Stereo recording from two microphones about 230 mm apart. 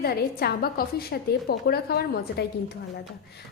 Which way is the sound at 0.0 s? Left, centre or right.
Left.